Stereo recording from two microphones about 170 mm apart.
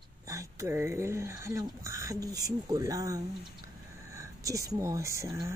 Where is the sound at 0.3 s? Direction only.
20° right (ahead or behind).